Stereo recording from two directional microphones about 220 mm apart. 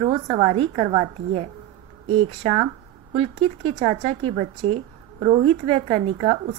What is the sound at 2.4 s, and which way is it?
Speech, 25° right (ahead or behind).